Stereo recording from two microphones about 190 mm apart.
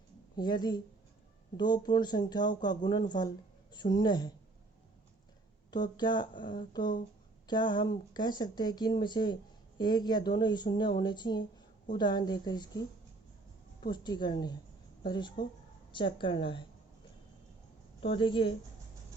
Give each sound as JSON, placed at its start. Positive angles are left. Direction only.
{"t": 0.3, "sound": "speech", "side_deg": 20}
{"t": 5.7, "sound": "speech", "side_deg": 25}
{"t": 13.8, "sound": "speech", "side_deg": 25}
{"t": 18.0, "sound": "speech", "side_deg": 25}